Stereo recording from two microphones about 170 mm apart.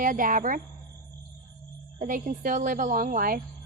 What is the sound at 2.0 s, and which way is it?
A woman's voice, 50° right (ahead or behind).